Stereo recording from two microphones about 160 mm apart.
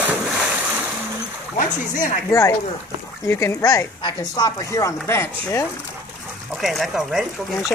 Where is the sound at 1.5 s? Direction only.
55° left (ahead or behind).